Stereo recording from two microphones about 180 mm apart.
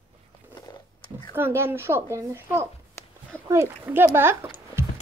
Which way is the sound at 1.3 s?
15° right (ahead or behind).